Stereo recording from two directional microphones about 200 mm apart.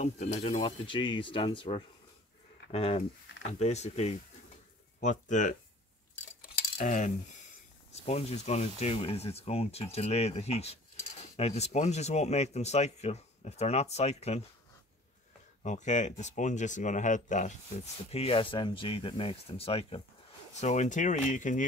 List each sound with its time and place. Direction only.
0.0 s speech: 35° left (ahead or behind)
6.8 s speech: 40° left (ahead or behind)
15.6 s speech: 35° left (ahead or behind)